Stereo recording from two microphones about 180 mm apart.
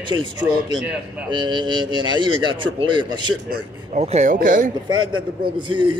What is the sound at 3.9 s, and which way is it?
Speech, 40° right (ahead or behind).